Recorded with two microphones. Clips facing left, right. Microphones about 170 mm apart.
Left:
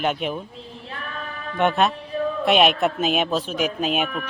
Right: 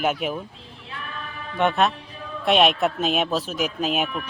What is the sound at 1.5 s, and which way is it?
Speech, centre (ahead or behind).